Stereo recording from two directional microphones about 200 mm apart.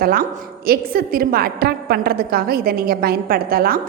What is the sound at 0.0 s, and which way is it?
A woman's voice, 45° right (ahead or behind).